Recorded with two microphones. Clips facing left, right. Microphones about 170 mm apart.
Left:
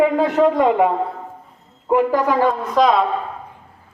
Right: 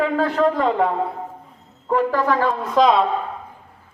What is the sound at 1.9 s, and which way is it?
Speech, 15° left (ahead or behind).